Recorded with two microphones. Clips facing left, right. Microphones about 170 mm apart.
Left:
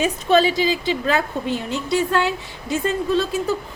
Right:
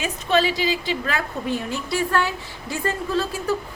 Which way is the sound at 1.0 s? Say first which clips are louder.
Left 5 dB; 25° left (ahead or behind).